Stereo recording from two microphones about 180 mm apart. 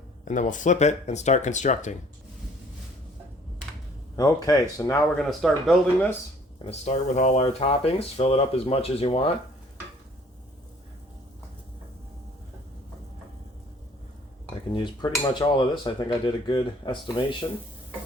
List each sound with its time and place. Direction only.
0.3 s speech: 45° left (ahead or behind)
4.2 s speech: 20° left (ahead or behind)
5.1 s speech: centre (ahead or behind)
6.7 s speech: 40° left (ahead or behind)
14.7 s speech: 25° left (ahead or behind)